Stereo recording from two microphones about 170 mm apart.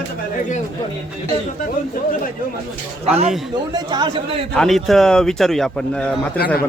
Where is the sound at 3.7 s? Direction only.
25° right (ahead or behind).